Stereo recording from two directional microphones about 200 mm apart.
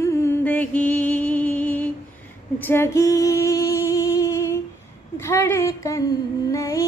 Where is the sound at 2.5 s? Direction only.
10° left (ahead or behind).